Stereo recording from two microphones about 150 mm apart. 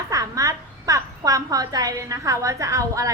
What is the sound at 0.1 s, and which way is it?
A woman's voice, 20° right (ahead or behind).